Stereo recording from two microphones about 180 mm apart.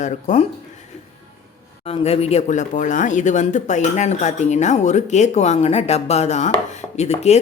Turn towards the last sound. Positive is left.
turn(degrees=35)  # may be behind; listen again after turning